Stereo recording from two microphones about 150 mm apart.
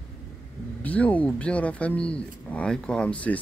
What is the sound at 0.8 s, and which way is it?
Speech, 10° left (ahead or behind).